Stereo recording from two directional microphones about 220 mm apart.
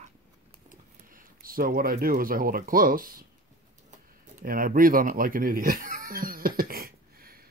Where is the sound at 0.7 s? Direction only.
40° right (ahead or behind).